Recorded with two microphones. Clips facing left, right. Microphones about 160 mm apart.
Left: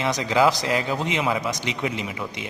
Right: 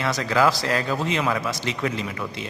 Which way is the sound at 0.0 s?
20° left (ahead or behind).